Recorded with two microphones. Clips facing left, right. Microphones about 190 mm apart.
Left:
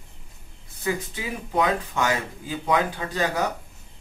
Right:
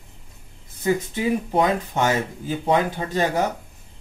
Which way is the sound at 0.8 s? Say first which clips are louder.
Right 6 dB; 30° right (ahead or behind).